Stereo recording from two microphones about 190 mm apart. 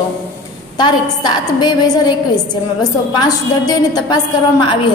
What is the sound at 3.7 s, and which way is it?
Speech, 20° left (ahead or behind).